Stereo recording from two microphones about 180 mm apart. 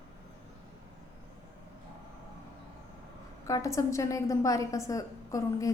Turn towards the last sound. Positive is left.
turn(degrees=20)  # may be behind; listen again after turning